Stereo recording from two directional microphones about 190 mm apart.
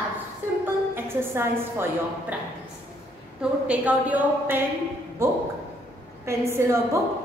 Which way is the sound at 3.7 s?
5° right (ahead or behind).